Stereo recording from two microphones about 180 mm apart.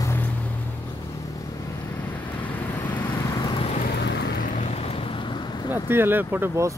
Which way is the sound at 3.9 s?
70° left (ahead or behind).